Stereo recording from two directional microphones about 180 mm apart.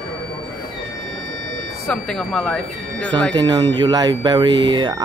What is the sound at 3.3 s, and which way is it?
Speech, 25° right (ahead or behind).